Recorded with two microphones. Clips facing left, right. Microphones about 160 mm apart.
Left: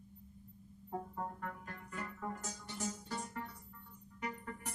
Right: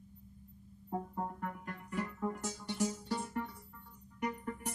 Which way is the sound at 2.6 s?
70° right (ahead or behind).